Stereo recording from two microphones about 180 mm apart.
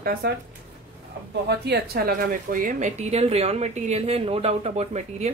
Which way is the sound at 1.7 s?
60° right (ahead or behind).